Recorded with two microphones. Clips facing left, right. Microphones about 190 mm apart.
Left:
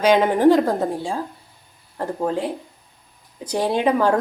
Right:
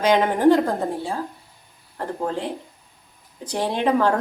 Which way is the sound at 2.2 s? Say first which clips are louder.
Left 4 dB; 10° left (ahead or behind).